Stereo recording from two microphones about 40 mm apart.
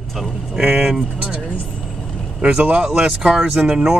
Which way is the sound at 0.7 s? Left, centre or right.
Right.